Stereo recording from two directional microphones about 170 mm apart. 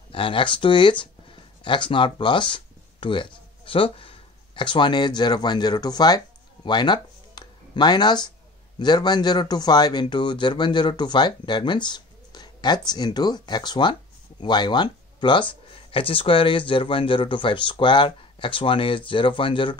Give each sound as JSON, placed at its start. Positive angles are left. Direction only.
{"t": 0.1, "sound": "speech", "side_deg": 30}